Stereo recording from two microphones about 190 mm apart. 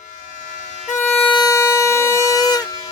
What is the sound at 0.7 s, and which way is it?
Music, 40° left (ahead or behind).